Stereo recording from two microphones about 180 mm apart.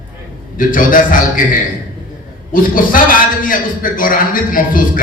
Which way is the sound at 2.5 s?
50° left (ahead or behind).